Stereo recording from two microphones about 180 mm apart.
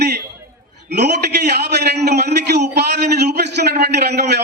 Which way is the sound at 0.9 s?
65° right (ahead or behind).